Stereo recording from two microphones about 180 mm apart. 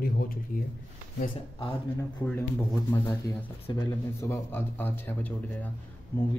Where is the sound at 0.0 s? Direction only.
50° left (ahead or behind).